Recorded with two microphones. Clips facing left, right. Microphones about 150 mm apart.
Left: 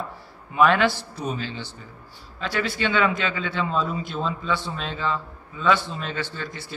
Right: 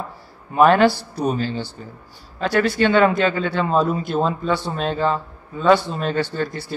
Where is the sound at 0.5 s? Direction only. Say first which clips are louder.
Right 5 dB; 45° right (ahead or behind).